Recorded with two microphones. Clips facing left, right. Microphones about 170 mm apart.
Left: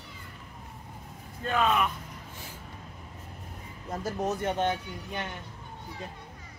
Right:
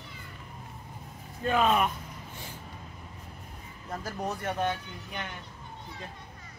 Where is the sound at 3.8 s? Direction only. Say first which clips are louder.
Left 4 dB; 20° left (ahead or behind).